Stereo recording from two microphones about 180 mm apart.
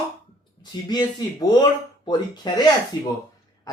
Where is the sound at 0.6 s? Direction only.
25° left (ahead or behind).